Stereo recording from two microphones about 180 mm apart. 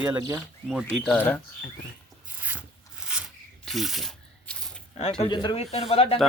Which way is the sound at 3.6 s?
Centre (ahead or behind).